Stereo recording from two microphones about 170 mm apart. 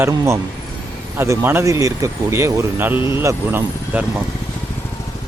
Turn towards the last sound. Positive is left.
turn(degrees=-10)  # may be behind; listen again after turning